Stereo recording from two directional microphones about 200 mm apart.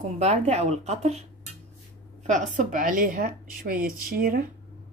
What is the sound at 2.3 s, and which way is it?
A woman's voice, 40° right (ahead or behind).